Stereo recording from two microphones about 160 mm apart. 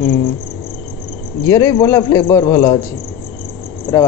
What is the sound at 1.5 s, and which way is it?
A man's voice, 20° left (ahead or behind).